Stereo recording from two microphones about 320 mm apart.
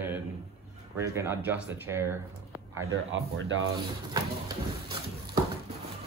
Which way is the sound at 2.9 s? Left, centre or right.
Right.